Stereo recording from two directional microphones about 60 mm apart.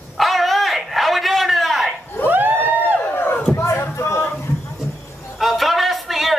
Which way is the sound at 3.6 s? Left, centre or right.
Left.